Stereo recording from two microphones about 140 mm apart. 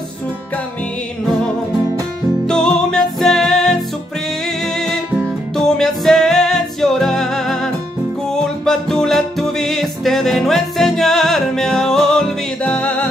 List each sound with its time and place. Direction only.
2.4 s music: 5° left (ahead or behind)
5.6 s music: 5° left (ahead or behind)